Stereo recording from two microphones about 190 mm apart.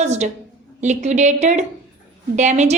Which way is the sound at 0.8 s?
40° right (ahead or behind).